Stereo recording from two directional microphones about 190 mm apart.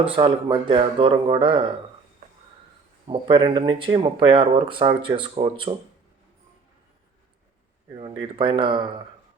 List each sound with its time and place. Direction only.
0.2 s speech: 25° right (ahead or behind)
3.1 s speech: 25° right (ahead or behind)
8.4 s speech: 25° right (ahead or behind)